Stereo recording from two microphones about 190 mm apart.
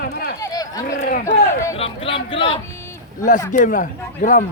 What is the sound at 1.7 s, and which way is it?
Speech, 30° left (ahead or behind).